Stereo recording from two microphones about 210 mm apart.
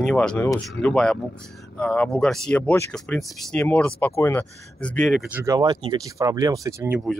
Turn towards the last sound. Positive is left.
turn(degrees=-10)  # may be behind; listen again after turning